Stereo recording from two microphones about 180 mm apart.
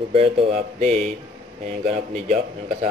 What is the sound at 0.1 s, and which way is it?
A man's voice, 40° right (ahead or behind).